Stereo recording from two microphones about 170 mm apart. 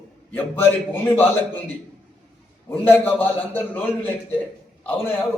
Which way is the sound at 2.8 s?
10° left (ahead or behind).